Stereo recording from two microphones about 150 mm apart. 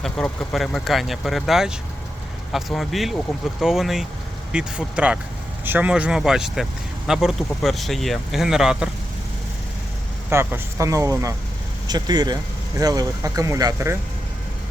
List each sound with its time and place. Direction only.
0.0 s speech: centre (ahead or behind)
10.2 s speech: 15° right (ahead or behind)